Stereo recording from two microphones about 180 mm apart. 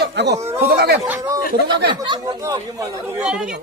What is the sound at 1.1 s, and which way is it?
Speech, 20° right (ahead or behind).